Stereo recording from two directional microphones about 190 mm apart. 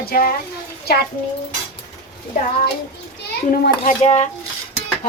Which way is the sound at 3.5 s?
50° left (ahead or behind).